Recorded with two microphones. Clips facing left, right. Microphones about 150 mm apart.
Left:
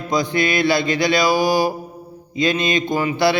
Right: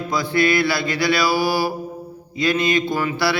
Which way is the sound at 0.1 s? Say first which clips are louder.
Even; 20° left (ahead or behind).